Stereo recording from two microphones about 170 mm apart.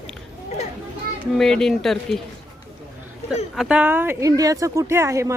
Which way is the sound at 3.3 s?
5° right (ahead or behind).